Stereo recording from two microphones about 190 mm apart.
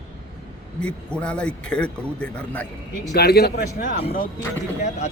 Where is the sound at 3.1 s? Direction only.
55° left (ahead or behind).